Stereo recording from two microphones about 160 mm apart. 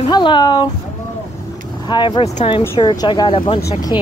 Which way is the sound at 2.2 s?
35° left (ahead or behind).